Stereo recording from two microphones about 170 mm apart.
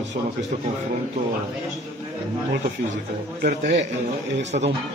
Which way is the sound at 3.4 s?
50° right (ahead or behind).